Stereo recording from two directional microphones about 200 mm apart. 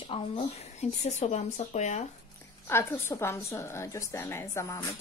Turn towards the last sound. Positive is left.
turn(degrees=15)  # may be behind; listen again after turning